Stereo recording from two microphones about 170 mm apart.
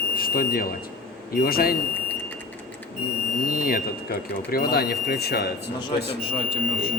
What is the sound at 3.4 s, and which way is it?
Speech, 55° left (ahead or behind).